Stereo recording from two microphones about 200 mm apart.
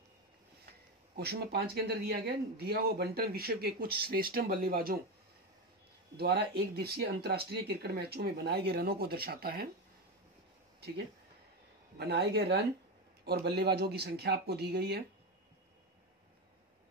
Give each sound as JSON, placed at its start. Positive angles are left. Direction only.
{"t": 0.7, "sound": "speech", "side_deg": -50}
{"t": 6.1, "sound": "speech", "side_deg": -55}
{"t": 12.0, "sound": "speech", "side_deg": -55}